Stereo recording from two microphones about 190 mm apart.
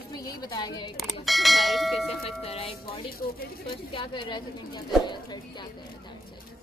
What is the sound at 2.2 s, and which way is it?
A woman's voice, 30° left (ahead or behind).